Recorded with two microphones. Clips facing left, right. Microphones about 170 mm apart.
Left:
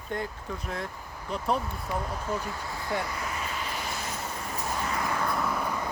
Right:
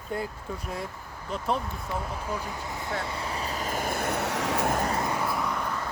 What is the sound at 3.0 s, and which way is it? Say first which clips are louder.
Vehicle: right 1 dB; 30° right (ahead or behind).